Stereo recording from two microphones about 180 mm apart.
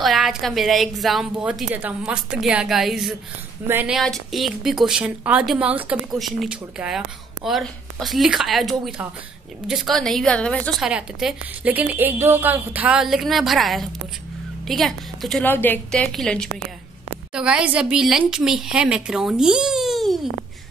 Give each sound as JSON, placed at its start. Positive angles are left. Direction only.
{"t": 0.0, "sound": "a woman's voice", "side_deg": 0}
{"t": 10.9, "sound": "a woman's voice", "side_deg": -5}